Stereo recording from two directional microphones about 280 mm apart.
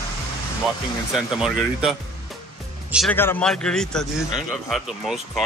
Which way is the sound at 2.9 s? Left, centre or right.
Centre.